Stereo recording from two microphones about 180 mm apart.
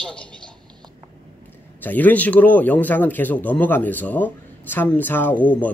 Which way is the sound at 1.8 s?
10° left (ahead or behind).